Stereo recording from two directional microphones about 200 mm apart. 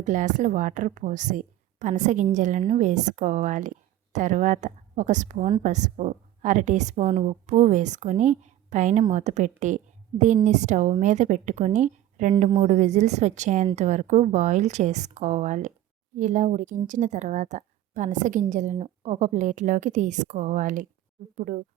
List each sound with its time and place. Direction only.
0.0 s a woman's voice: 40° right (ahead or behind)